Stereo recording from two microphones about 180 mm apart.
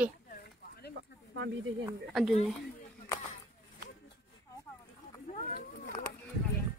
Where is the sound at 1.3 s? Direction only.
90° right.